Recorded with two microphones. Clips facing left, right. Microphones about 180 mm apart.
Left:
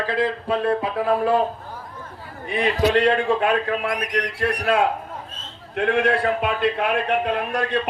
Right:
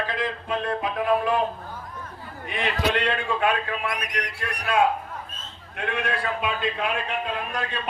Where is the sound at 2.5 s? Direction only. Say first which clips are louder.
Left 6 dB; 35° left (ahead or behind); by 4.1 s 55° left (ahead or behind).